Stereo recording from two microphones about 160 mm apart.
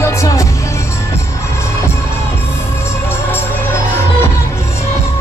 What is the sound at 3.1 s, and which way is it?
Music, 15° left (ahead or behind).